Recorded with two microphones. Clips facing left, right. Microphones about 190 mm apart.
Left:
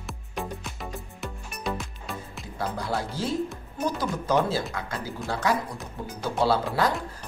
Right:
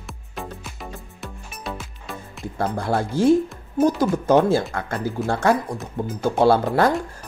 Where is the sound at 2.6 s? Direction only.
55° right (ahead or behind).